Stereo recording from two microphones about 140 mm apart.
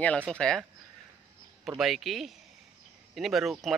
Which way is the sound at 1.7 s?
Centre (ahead or behind).